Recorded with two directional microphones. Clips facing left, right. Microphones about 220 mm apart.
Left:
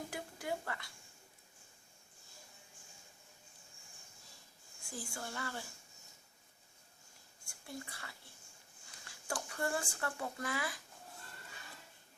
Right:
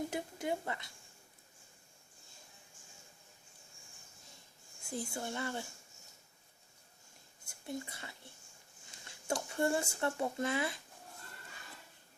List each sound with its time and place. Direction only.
0.1 s a sound: 20° right (ahead or behind)
4.9 s speech: 20° right (ahead or behind)
7.4 s speech: 20° right (ahead or behind)